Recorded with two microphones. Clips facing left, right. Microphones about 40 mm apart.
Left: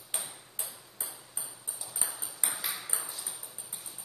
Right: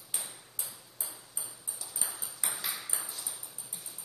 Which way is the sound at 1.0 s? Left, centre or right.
Centre.